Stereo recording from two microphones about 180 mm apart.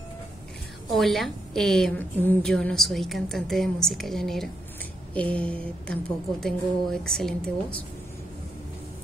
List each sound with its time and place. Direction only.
0.9 s a woman's voice: centre (ahead or behind)